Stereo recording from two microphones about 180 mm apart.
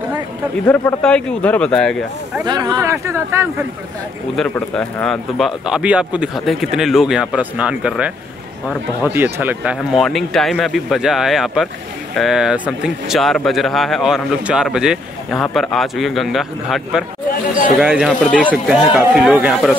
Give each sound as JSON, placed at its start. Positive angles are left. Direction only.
{"t": 0.7, "sound": "speech", "side_deg": 10}
{"t": 2.4, "sound": "speech", "side_deg": -25}
{"t": 4.4, "sound": "speech", "side_deg": 5}